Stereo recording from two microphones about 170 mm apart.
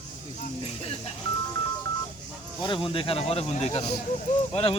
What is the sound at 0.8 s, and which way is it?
Music, 35° left (ahead or behind).